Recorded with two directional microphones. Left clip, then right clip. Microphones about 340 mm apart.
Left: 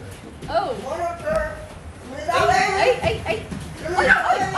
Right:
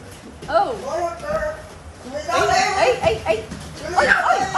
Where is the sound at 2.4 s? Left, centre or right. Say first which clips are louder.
Right 1 dB; right.